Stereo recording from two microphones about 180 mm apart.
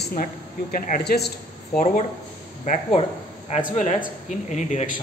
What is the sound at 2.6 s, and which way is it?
Speech, 45° left (ahead or behind).